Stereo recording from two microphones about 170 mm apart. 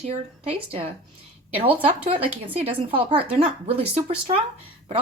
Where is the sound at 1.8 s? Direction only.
35° right (ahead or behind).